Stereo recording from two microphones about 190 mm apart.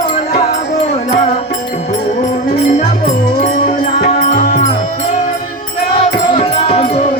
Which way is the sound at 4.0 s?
50° left (ahead or behind).